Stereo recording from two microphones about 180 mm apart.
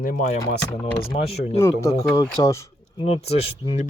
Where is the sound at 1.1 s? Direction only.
35° left (ahead or behind).